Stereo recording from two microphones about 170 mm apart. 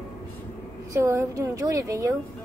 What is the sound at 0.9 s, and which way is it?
A woman's voice, 15° right (ahead or behind).